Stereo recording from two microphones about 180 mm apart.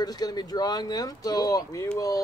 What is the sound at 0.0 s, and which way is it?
Speech, 20° left (ahead or behind).